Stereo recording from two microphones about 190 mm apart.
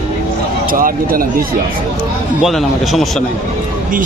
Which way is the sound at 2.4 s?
Centre (ahead or behind).